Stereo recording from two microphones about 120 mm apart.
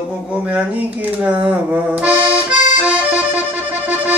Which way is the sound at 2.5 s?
90° left.